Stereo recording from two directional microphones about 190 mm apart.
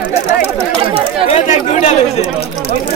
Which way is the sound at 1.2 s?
35° left (ahead or behind).